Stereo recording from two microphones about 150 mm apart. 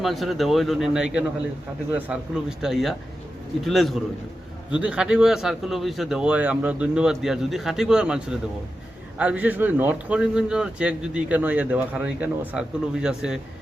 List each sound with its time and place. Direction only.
0.0 s a man's voice: centre (ahead or behind)